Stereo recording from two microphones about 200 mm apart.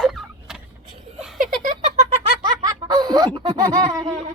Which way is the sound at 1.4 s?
45° right (ahead or behind).